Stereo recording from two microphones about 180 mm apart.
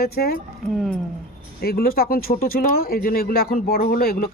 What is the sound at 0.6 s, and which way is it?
Speech, 5° left (ahead or behind).